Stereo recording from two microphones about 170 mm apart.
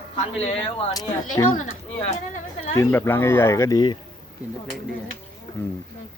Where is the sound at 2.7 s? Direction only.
15° left (ahead or behind).